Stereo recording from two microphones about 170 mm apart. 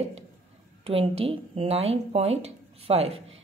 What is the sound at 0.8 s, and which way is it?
Speech, 35° right (ahead or behind).